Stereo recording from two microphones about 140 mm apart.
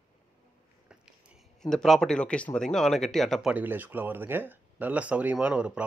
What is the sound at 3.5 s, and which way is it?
Speech, 15° right (ahead or behind).